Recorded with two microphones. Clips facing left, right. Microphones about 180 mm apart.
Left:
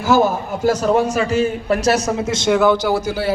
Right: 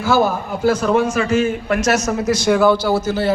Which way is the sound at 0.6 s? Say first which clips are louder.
Even; 40° left (ahead or behind).